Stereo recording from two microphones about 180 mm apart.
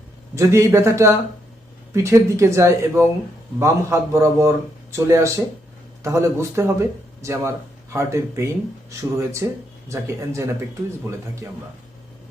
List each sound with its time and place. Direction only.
0.3 s a man's voice: 15° right (ahead or behind)